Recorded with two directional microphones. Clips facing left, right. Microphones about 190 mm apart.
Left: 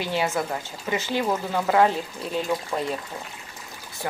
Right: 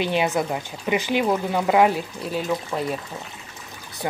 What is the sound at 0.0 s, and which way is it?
Speech, 20° right (ahead or behind).